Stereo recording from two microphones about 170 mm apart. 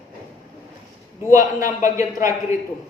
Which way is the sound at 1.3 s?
15° right (ahead or behind).